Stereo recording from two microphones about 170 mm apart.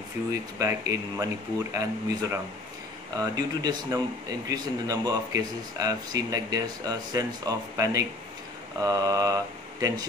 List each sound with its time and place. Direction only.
0.3 s speech: 20° right (ahead or behind)